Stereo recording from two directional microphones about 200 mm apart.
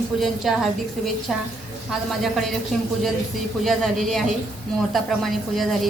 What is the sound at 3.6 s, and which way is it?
A woman's voice, centre (ahead or behind).